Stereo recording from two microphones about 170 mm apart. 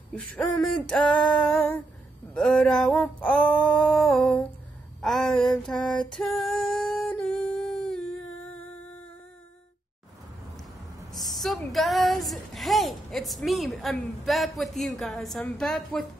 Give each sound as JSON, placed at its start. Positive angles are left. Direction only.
{"t": 0.1, "sound": "a woman's voice", "side_deg": 5}
{"t": 5.0, "sound": "female singing", "side_deg": 0}
{"t": 11.1, "sound": "a sound", "side_deg": 0}
{"t": 11.7, "sound": "a woman's voice", "side_deg": 0}